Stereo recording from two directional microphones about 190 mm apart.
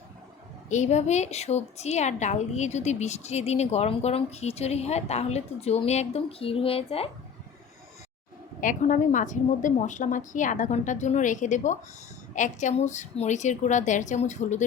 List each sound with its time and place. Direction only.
0.7 s a woman's voice: 35° left (ahead or behind)
8.6 s a woman's voice: 40° left (ahead or behind)